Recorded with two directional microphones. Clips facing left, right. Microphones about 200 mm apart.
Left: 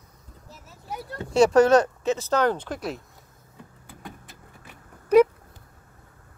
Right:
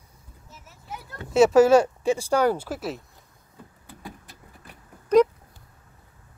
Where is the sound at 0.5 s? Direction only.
35° left (ahead or behind).